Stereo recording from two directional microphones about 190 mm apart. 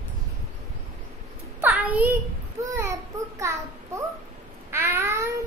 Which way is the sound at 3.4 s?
15° right (ahead or behind).